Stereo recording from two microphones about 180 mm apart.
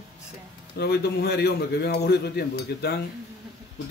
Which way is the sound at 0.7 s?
65° left (ahead or behind).